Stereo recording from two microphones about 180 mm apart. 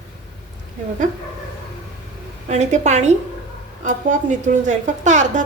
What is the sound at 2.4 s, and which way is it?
A woman's voice, 40° right (ahead or behind).